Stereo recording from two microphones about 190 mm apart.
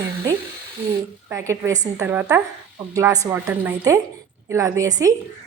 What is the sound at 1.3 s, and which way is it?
A woman's voice, 15° right (ahead or behind).